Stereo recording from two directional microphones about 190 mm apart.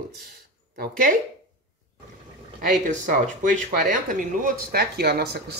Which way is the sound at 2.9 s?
40° right (ahead or behind).